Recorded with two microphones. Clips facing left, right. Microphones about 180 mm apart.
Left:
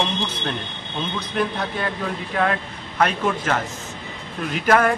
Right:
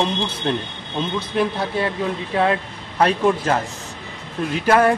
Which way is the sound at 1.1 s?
25° right (ahead or behind).